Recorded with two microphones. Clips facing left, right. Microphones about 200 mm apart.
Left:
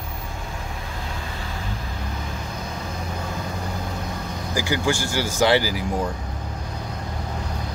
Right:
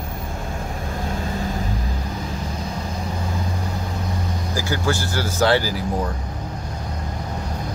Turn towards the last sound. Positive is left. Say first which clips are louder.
# even
turn(degrees=15)  # may be behind; listen again after turning